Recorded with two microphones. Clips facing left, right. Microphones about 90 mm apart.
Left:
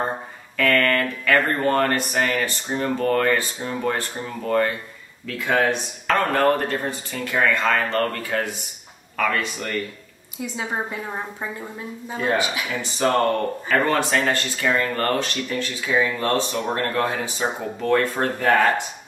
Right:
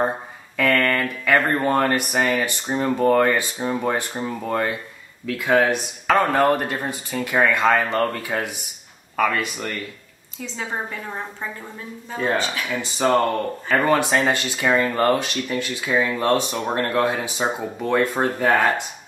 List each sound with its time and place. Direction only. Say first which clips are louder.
0.6 s speech: even; 10° right (ahead or behind)
10.4 s a woman's voice: left 1 dB; 10° left (ahead or behind)
13.0 s speech: even; 10° right (ahead or behind)
13.9 s speech: right 2 dB; 15° right (ahead or behind)